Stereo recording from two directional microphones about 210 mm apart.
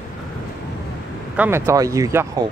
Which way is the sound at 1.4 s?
10° right (ahead or behind).